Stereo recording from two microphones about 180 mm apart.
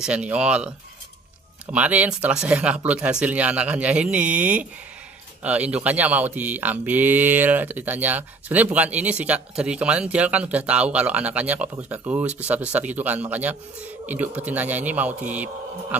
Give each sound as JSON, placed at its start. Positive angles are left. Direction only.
{"t": 0.0, "sound": "speech", "side_deg": -5}